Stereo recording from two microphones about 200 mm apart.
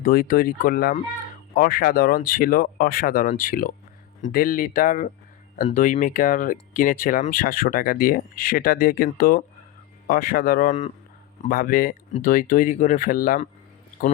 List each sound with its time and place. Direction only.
0.0 s speech: 45° left (ahead or behind)